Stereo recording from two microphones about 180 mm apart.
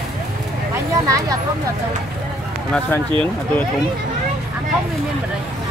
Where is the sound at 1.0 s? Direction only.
20° right (ahead or behind).